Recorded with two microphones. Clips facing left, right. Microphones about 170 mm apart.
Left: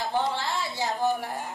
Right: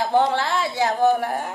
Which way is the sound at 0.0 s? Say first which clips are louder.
Right 8 dB; 70° right (ahead or behind).